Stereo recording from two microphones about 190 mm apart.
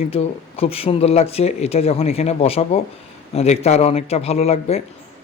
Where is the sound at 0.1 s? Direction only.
30° left (ahead or behind).